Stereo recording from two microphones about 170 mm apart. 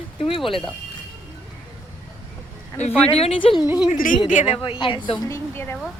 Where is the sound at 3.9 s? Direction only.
50° left (ahead or behind).